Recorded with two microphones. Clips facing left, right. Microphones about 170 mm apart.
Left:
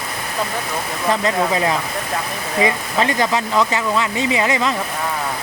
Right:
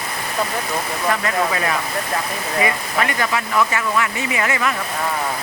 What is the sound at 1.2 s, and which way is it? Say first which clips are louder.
Speech: left 3 dB; 20° left (ahead or behind).